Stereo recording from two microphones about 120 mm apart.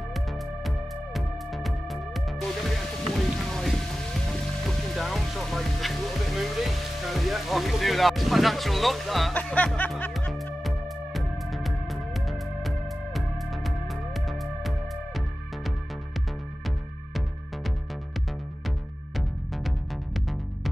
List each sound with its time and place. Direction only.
0.7 s music: centre (ahead or behind)
3.4 s speech: 5° left (ahead or behind)
9.3 s speech: 10° left (ahead or behind)
10.3 s music: centre (ahead or behind)
19.1 s music: centre (ahead or behind)